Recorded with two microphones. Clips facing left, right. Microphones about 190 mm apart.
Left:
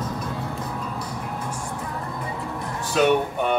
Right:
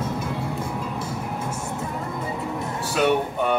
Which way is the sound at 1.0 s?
25° right (ahead or behind).